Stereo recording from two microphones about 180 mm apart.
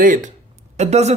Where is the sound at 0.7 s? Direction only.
40° right (ahead or behind).